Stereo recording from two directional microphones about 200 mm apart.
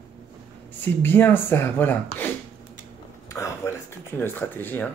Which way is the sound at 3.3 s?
15° left (ahead or behind).